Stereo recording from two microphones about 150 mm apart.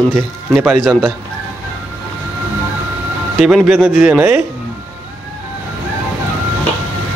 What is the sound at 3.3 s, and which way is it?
Speech, 5° right (ahead or behind).